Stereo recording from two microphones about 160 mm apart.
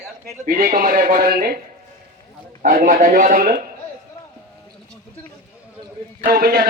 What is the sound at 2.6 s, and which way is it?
Speech, 55° right (ahead or behind).